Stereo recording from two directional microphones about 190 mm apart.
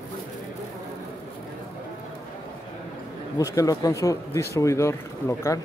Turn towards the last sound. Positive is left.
turn(degrees=15)  # may be behind; listen again after turning